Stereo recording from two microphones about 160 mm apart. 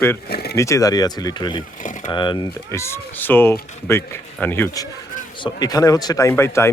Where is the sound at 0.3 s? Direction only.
75° left (ahead or behind).